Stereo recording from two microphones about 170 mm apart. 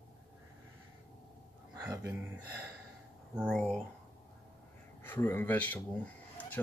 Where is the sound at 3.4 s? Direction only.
5° left (ahead or behind).